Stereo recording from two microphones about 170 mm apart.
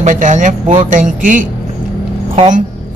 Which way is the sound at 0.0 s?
50° right (ahead or behind).